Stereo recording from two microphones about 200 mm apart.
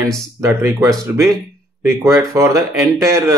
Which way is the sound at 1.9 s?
15° right (ahead or behind).